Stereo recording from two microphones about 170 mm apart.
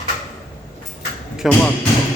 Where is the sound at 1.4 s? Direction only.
Centre (ahead or behind).